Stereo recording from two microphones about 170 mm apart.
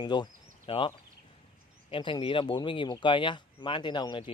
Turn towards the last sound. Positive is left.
turn(degrees=30)  # may be behind; listen again after turning